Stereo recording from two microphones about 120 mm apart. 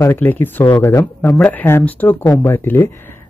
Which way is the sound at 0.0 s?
15° left (ahead or behind).